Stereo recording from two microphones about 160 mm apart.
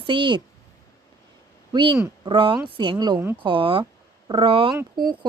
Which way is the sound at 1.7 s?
30° right (ahead or behind).